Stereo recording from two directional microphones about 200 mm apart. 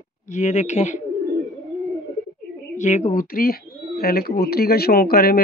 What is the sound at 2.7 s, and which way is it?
Speech, 35° left (ahead or behind).